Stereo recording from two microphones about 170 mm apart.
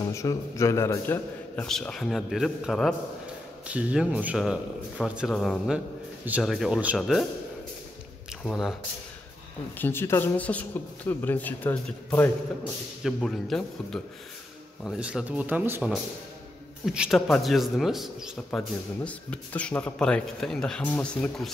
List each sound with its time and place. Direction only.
0.0 s speech: 20° left (ahead or behind)
1.7 s speech: 5° left (ahead or behind)
8.5 s speech: centre (ahead or behind)
9.8 s speech: 15° left (ahead or behind)